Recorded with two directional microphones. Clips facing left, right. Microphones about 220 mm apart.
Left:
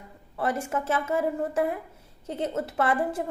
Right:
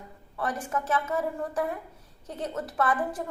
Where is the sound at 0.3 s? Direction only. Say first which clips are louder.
Left 3 dB; 25° left (ahead or behind).